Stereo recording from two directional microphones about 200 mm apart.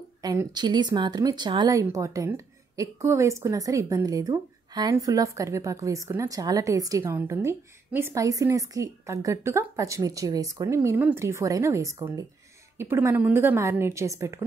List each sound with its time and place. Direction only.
0.2 s a woman's voice: 20° right (ahead or behind)